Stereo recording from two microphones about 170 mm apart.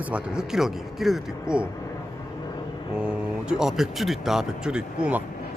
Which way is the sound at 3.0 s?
5° right (ahead or behind).